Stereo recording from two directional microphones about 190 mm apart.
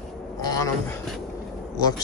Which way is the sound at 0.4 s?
15° left (ahead or behind).